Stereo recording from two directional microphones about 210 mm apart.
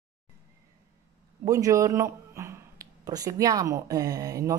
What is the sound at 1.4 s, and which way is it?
Speech, 15° right (ahead or behind).